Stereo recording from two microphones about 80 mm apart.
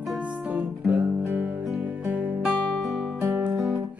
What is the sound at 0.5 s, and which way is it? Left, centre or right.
Music, centre.